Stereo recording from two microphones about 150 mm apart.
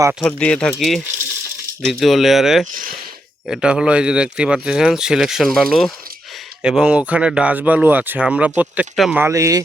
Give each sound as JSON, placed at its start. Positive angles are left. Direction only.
{"t": 0.2, "sound": "speech", "side_deg": 5}
{"t": 9.2, "sound": "speech", "side_deg": -20}